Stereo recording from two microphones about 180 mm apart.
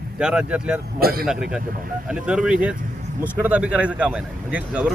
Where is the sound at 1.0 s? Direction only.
55° right (ahead or behind).